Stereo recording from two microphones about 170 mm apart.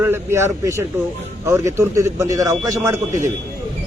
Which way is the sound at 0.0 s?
15° right (ahead or behind).